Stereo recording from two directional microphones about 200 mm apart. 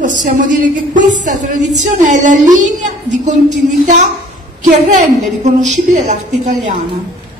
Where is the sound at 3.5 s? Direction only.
35° right (ahead or behind).